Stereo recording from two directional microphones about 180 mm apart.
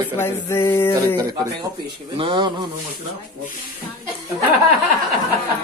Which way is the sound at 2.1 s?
25° right (ahead or behind).